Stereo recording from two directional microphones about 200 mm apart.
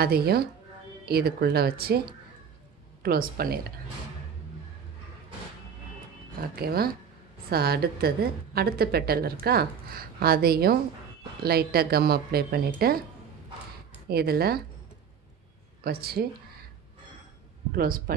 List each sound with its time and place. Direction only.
0.0 s a woman's voice: 50° right (ahead or behind)
6.5 s a woman's voice: 50° right (ahead or behind)
14.0 s a woman's voice: 50° right (ahead or behind)
15.8 s a woman's voice: 50° right (ahead or behind)
17.7 s a woman's voice: 45° right (ahead or behind)